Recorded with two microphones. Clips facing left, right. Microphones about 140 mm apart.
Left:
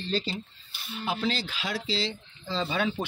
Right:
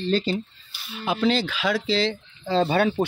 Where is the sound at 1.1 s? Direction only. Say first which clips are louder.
Right 8 dB; 70° right (ahead or behind).